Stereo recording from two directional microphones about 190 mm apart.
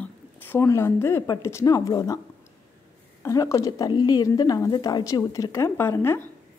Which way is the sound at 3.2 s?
15° left (ahead or behind).